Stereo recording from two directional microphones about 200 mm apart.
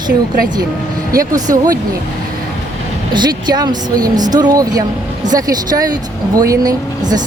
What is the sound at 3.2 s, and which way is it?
A woman's voice, 20° right (ahead or behind).